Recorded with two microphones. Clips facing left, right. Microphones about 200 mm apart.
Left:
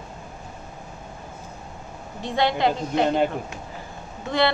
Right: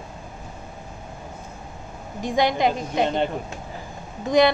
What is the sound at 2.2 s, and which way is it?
Speech, 15° right (ahead or behind).